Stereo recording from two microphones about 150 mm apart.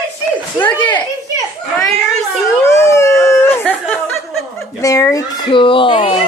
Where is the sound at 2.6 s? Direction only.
20° left (ahead or behind).